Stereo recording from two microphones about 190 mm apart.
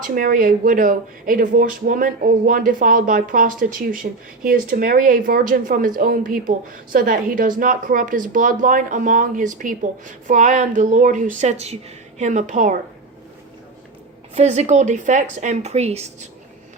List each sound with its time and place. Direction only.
0.0 s a woman's voice: 45° right (ahead or behind)
14.3 s a woman's voice: 35° right (ahead or behind)